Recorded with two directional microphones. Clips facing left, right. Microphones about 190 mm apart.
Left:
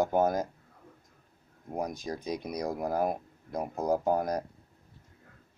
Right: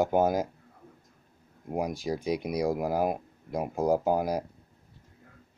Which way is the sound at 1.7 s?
10° right (ahead or behind).